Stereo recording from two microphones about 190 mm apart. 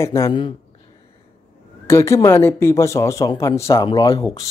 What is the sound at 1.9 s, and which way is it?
A man's voice, 15° left (ahead or behind).